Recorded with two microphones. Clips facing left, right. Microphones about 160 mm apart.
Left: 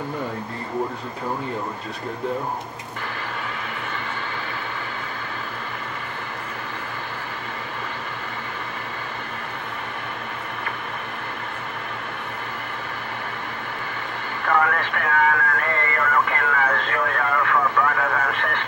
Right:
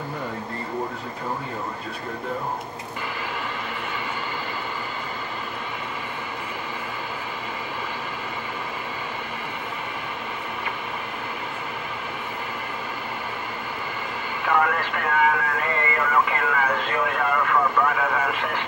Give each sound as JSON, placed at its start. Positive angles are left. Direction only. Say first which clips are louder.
{"t": 14.4, "sound": "radio", "louder": "left 1 dB", "side_deg": -5}